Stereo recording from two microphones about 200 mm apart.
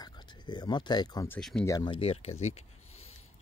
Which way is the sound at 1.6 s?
20° left (ahead or behind).